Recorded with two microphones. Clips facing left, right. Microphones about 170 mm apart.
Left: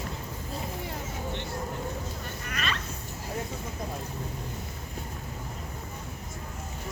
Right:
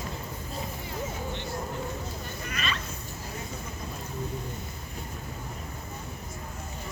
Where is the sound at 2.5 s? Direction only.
60° left (ahead or behind).